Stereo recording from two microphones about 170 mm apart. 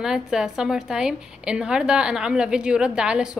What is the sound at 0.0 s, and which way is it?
A woman's voice, 5° right (ahead or behind).